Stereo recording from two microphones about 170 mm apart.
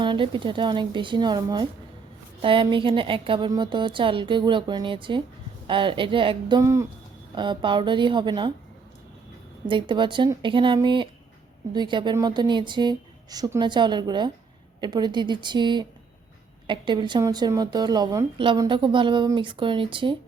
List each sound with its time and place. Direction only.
0.0 s speech: 30° right (ahead or behind)
6.6 s speech: 15° right (ahead or behind)
7.3 s speech: 25° right (ahead or behind)
9.6 s speech: 30° right (ahead or behind)